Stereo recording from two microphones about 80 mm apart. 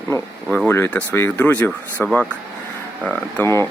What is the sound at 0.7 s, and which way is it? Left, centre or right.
Speech, left.